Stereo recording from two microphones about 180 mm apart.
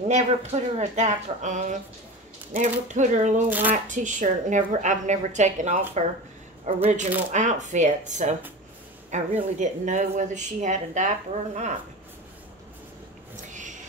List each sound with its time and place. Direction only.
0.1 s a woman's voice: 40° right (ahead or behind)
3.4 s speech: 10° right (ahead or behind)
3.7 s a woman's voice: 45° right (ahead or behind)
13.5 s a sound: 45° right (ahead or behind)